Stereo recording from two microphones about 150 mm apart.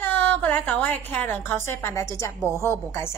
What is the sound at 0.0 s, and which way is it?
A woman's voice, 10° left (ahead or behind).